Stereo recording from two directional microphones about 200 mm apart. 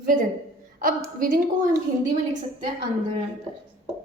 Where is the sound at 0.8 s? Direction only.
45° right (ahead or behind).